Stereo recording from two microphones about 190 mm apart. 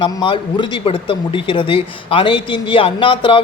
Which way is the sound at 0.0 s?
25° left (ahead or behind).